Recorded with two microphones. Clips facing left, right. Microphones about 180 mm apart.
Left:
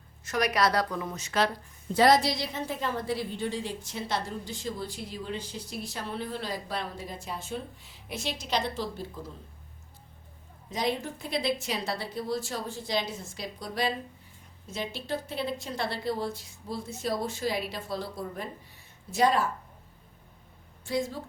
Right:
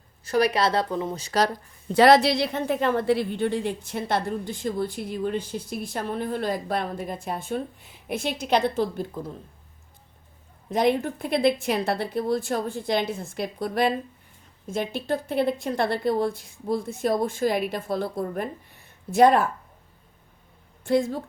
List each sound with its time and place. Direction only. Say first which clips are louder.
0.3 s speech: right 5 dB; 30° right (ahead or behind)
1.9 s a woman's voice: right 6 dB; 70° right (ahead or behind)
10.7 s a woman's voice: right 8 dB; 55° right (ahead or behind)
20.8 s a woman's voice: right 8 dB; 55° right (ahead or behind)